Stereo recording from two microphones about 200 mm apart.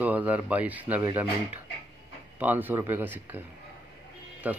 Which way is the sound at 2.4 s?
10° right (ahead or behind).